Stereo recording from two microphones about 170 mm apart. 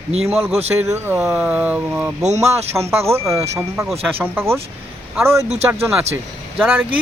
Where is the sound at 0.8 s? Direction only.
15° right (ahead or behind).